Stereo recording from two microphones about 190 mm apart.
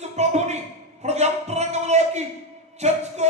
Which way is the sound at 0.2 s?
35° right (ahead or behind).